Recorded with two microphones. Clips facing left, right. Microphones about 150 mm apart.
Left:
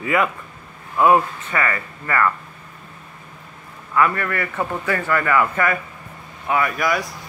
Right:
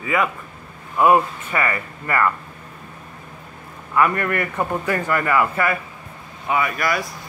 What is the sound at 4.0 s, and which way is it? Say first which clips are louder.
A man's voice: right 1 dB; 20° right (ahead or behind).